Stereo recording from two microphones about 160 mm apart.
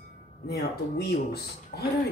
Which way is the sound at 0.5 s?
80° left.